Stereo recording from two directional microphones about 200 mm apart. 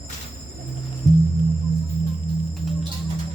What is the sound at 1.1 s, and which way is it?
Music, 35° right (ahead or behind).